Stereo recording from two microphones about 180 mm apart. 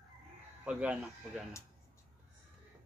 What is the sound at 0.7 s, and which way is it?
Speech, 5° right (ahead or behind).